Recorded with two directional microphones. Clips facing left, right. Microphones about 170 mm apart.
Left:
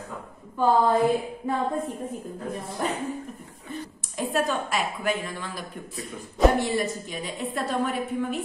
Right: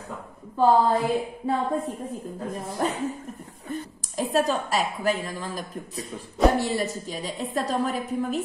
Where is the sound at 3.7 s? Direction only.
40° right (ahead or behind).